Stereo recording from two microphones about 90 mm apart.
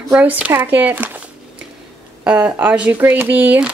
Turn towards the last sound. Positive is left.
turn(degrees=-20)  # may be behind; listen again after turning